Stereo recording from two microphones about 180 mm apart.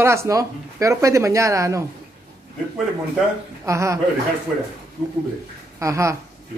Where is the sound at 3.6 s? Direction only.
15° right (ahead or behind).